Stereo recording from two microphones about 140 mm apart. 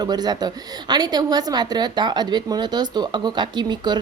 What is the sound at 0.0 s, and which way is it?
A woman's voice, 30° right (ahead or behind).